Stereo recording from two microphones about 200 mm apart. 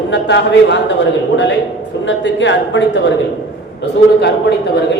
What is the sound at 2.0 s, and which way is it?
A woman's voice, 65° left (ahead or behind).